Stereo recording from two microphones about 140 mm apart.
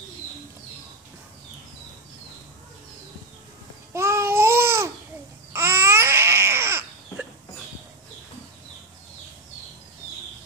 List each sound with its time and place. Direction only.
3.9 s babbling: 20° right (ahead or behind)